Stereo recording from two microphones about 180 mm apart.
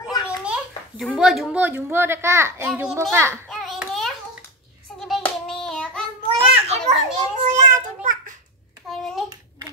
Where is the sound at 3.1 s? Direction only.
15° right (ahead or behind).